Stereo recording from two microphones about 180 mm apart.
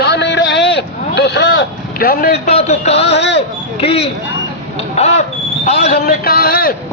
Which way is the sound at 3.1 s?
70° left (ahead or behind).